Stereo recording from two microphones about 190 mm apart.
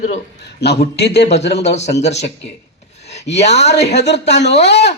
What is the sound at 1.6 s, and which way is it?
Speech, 35° left (ahead or behind).